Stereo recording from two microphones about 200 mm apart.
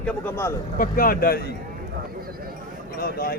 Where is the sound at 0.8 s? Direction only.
45° left (ahead or behind).